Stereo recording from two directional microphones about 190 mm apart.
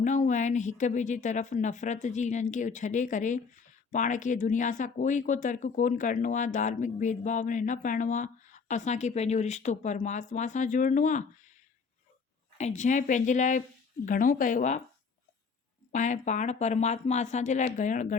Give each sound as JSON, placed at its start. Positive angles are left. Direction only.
{"t": 0.0, "sound": "speech", "side_deg": 40}
{"t": 12.5, "sound": "speech", "side_deg": 40}
{"t": 15.9, "sound": "speech", "side_deg": 40}